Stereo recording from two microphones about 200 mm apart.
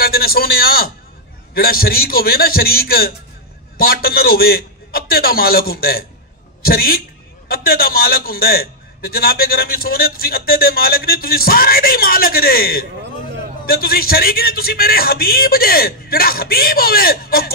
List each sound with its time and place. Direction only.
0.0 s a man's voice: 50° left (ahead or behind)